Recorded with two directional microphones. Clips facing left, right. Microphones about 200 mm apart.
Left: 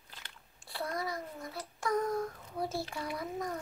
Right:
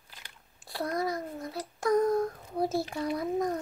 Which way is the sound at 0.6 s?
40° right (ahead or behind).